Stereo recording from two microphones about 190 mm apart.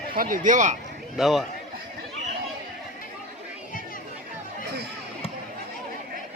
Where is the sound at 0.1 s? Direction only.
45° right (ahead or behind).